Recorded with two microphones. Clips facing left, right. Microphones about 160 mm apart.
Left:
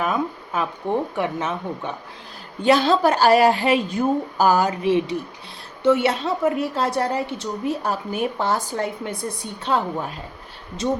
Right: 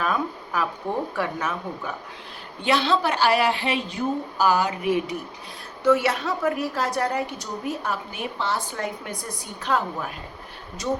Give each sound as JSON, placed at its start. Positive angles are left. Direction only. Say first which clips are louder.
{"t": 0.0, "sound": "a woman's voice", "louder": "left 2 dB", "side_deg": 20}
{"t": 2.6, "sound": "a woman's voice", "louder": "left 5 dB", "side_deg": 45}
{"t": 4.8, "sound": "a woman's voice", "louder": "left 4 dB", "side_deg": 30}
{"t": 8.7, "sound": "a woman's voice", "louder": "left 4 dB", "side_deg": 30}